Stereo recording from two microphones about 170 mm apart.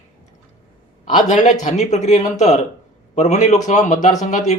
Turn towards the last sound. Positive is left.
turn(degrees=45)  # may be behind; listen again after turning